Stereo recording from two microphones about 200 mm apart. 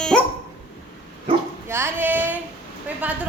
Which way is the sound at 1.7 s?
10° right (ahead or behind).